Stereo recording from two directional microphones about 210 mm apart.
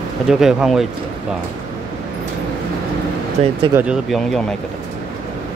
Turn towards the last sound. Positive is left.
turn(degrees=0)  # may be behind; listen again after turning